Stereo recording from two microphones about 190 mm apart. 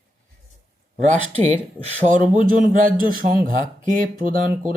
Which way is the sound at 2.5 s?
45° right (ahead or behind).